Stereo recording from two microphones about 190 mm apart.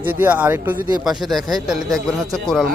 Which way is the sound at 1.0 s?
Centre (ahead or behind).